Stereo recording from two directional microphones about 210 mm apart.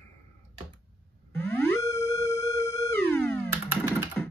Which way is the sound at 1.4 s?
10° left (ahead or behind).